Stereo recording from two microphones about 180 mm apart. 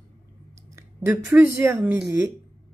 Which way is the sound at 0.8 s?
10° right (ahead or behind).